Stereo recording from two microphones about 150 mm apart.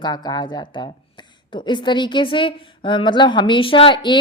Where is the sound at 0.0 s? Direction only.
30° left (ahead or behind).